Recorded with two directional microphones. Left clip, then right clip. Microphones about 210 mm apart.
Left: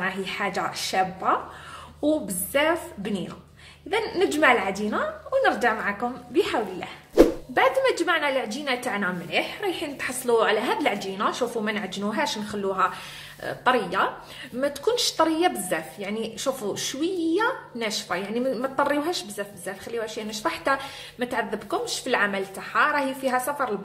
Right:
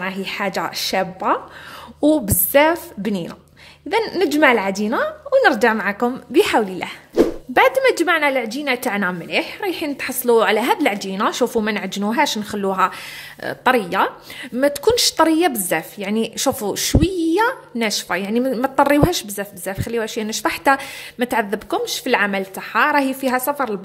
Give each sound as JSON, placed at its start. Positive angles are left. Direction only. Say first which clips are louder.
{"t": 0.0, "sound": "a woman's voice", "louder": "right 4 dB", "side_deg": -45}
{"t": 7.2, "sound": "a sound", "louder": "right 1 dB", "side_deg": 0}
{"t": 7.5, "sound": "a woman's voice", "louder": "right 8 dB", "side_deg": -45}